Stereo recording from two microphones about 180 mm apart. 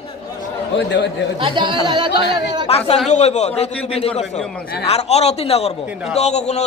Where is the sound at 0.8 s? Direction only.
75° left (ahead or behind).